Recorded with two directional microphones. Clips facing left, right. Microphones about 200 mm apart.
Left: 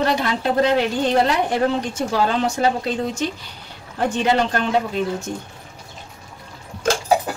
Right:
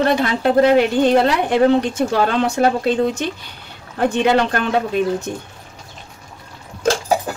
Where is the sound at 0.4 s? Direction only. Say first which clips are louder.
Right 6 dB; 55° right (ahead or behind).